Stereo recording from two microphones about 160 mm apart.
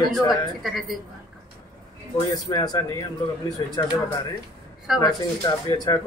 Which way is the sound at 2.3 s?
20° left (ahead or behind).